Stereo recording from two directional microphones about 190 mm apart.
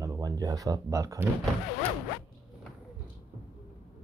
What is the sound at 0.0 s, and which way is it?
Speech, 20° right (ahead or behind).